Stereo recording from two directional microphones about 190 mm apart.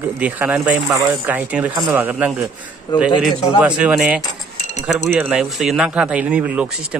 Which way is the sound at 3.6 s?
5° right (ahead or behind).